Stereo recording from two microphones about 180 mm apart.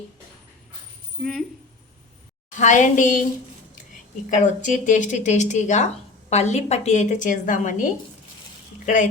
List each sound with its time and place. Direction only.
1.2 s speech: centre (ahead or behind)
2.6 s a woman's voice: 45° left (ahead or behind)
4.3 s a woman's voice: 45° left (ahead or behind)